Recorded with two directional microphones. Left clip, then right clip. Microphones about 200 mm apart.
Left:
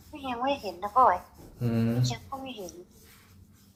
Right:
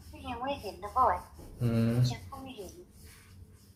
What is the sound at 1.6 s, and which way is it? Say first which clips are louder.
Speech: left 2 dB; centre (ahead or behind).